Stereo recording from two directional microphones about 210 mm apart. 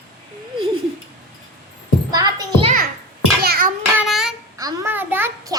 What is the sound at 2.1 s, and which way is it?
Music, 15° right (ahead or behind).